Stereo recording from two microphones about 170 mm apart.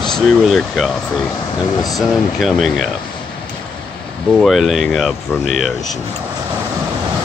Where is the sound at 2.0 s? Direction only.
Centre (ahead or behind).